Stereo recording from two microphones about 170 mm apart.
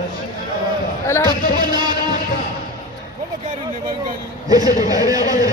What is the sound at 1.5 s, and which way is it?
Music, 25° right (ahead or behind).